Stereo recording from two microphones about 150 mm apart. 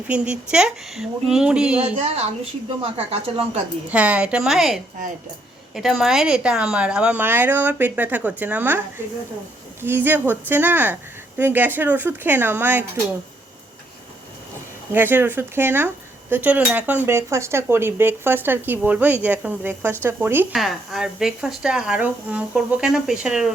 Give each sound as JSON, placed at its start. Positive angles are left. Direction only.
{"t": 0.1, "sound": "speech", "side_deg": -5}
{"t": 2.0, "sound": "a woman's voice", "side_deg": -45}
{"t": 3.8, "sound": "speech", "side_deg": -10}
{"t": 9.8, "sound": "speech", "side_deg": -15}
{"t": 14.9, "sound": "speech", "side_deg": -15}
{"t": 20.5, "sound": "speech", "side_deg": 0}